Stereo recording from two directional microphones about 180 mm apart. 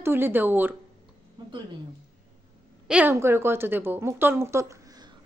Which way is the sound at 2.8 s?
10° right (ahead or behind).